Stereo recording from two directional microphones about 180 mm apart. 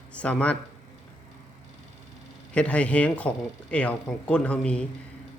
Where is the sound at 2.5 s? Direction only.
5° left (ahead or behind).